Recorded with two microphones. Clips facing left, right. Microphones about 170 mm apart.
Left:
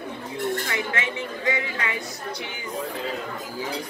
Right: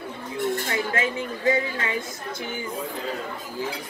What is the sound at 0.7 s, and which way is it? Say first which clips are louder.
A woman's voice: right 3 dB; 40° right (ahead or behind).